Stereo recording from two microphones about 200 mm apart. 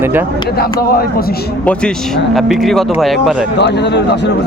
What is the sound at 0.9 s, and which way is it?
Speech, 50° left (ahead or behind).